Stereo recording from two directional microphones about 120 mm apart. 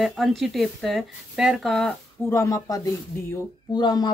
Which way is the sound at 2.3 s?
25° left (ahead or behind).